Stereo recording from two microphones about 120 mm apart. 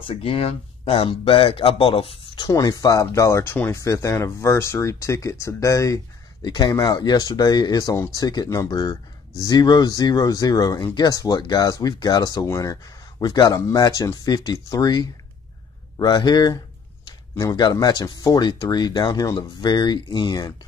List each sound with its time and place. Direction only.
0.0 s speech: 50° left (ahead or behind); by 5.9 s 25° left (ahead or behind)
6.4 s speech: 40° left (ahead or behind)